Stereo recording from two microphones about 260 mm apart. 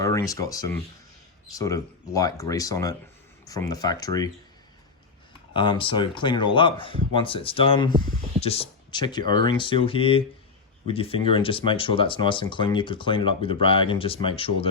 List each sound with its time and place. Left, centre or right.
0.0 s speech: centre
5.5 s speech: centre